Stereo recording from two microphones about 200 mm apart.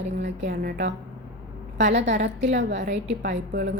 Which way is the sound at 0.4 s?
45° right (ahead or behind).